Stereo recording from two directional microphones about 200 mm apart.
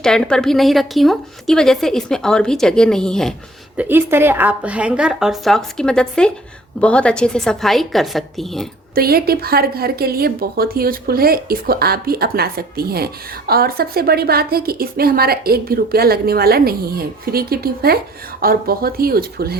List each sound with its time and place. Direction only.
0.0 s a woman's voice: 5° left (ahead or behind)
3.8 s a woman's voice: 10° right (ahead or behind)
9.0 s a woman's voice: 50° right (ahead or behind)